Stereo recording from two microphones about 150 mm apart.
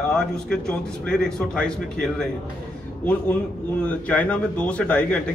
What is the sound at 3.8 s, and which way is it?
A man's voice, 10° left (ahead or behind).